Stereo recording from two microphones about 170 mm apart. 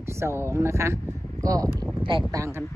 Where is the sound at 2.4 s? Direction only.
15° right (ahead or behind).